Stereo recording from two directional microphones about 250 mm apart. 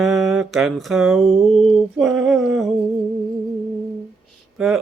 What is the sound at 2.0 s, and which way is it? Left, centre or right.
Speech, centre.